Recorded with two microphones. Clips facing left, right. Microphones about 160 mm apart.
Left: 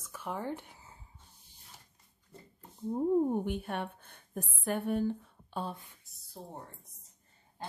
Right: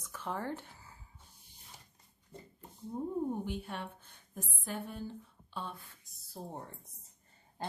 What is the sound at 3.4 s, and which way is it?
A woman's voice, 55° left (ahead or behind).